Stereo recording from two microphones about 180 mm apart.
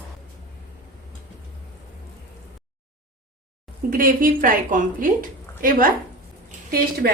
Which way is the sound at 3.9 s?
50° right (ahead or behind).